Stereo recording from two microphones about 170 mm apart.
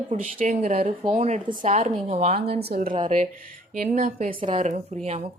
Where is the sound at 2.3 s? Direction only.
65° right (ahead or behind).